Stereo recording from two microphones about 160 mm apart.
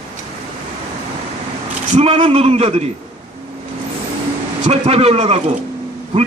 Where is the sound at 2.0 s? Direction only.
40° right (ahead or behind).